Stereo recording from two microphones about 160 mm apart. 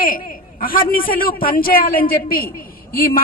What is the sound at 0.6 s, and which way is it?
A woman's voice, 65° left (ahead or behind).